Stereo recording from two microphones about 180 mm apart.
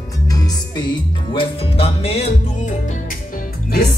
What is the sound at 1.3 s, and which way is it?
Music, 30° left (ahead or behind).